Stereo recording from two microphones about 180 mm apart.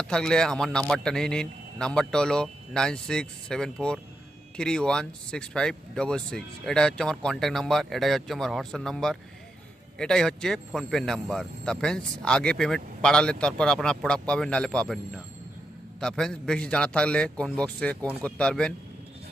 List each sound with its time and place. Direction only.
0.0 s speech: 5° left (ahead or behind)